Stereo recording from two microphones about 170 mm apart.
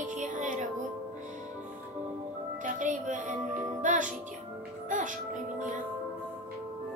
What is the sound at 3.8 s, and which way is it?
Music, 50° right (ahead or behind).